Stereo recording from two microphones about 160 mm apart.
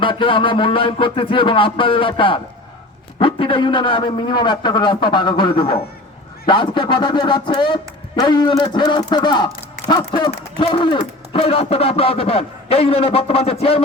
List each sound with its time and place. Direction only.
0.0 s a man's voice: 30° left (ahead or behind)